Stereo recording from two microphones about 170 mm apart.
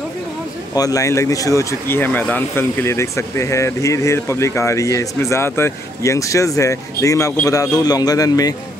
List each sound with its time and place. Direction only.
0.7 s a man's voice: 20° left (ahead or behind)